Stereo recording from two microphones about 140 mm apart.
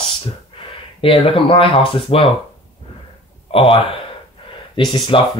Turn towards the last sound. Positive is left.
turn(degrees=35)  # may be behind; listen again after turning